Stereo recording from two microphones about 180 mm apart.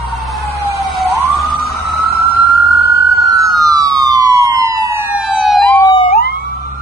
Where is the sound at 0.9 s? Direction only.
Centre (ahead or behind).